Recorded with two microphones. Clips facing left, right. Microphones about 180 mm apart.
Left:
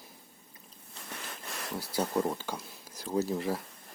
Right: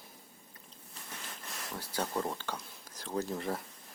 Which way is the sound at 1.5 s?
70° left (ahead or behind).